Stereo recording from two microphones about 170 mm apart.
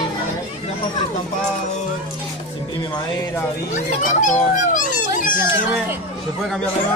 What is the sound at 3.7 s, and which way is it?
Speech, 50° left (ahead or behind).